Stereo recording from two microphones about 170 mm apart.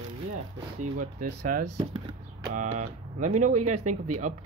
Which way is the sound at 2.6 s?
45° right (ahead or behind).